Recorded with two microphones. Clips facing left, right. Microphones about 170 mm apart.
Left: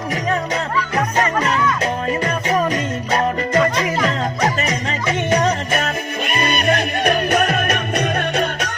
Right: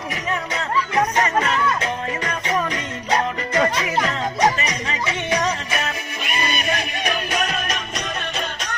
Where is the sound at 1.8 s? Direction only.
35° left (ahead or behind).